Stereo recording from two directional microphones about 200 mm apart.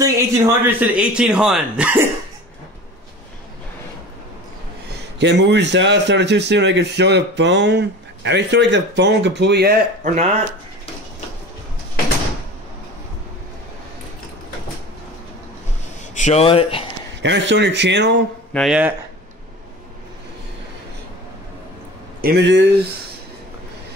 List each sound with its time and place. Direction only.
0.0 s speech: 10° right (ahead or behind)
5.2 s a man's voice: 60° right (ahead or behind)
16.2 s speech: 35° left (ahead or behind)
17.2 s a man's voice: 60° right (ahead or behind)
18.5 s speech: centre (ahead or behind)
22.2 s a man's voice: 55° right (ahead or behind)